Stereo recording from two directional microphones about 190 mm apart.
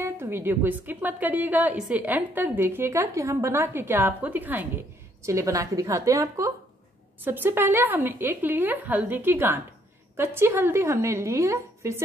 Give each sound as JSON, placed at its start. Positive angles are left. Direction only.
{"t": 0.0, "sound": "a woman's voice", "side_deg": -10}